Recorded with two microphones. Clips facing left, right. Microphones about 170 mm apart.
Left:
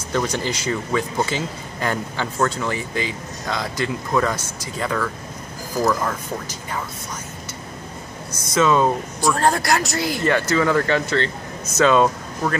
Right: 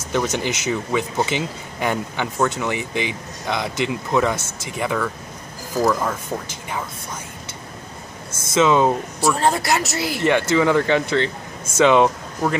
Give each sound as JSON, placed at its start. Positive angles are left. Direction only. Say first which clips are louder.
{"t": 0.1, "sound": "speech", "louder": "right 1 dB", "side_deg": -15}
{"t": 0.7, "sound": "speech", "louder": "even", "side_deg": -5}
{"t": 1.2, "sound": "speech", "louder": "right 1 dB", "side_deg": -15}
{"t": 8.3, "sound": "speech", "louder": "right 2 dB", "side_deg": -25}
{"t": 8.6, "sound": "speech", "louder": "right 1 dB", "side_deg": -10}
{"t": 10.3, "sound": "speech", "louder": "right 2 dB", "side_deg": -20}